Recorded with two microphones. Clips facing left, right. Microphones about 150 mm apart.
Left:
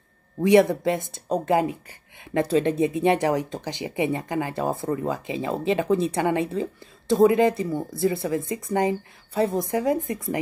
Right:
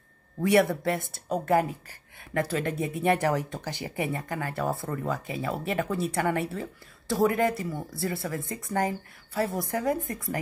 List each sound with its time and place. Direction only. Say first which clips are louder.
0.4 s speech: left 5 dB; 20° left (ahead or behind)